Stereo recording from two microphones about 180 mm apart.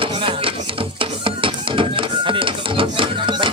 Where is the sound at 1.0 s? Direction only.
30° right (ahead or behind).